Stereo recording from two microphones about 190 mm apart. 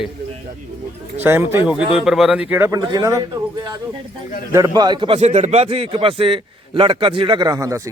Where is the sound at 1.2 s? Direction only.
10° right (ahead or behind).